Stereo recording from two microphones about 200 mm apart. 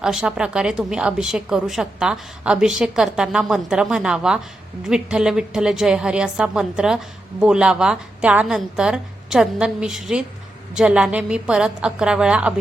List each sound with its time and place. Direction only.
0.0 s a woman's voice: 5° right (ahead or behind)